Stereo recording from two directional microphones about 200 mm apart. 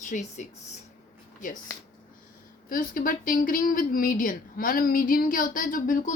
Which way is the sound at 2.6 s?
45° left (ahead or behind).